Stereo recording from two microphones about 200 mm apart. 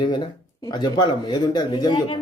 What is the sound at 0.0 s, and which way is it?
Speech, 25° left (ahead or behind).